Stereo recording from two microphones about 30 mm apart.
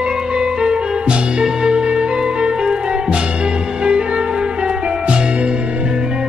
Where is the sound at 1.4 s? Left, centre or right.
Right.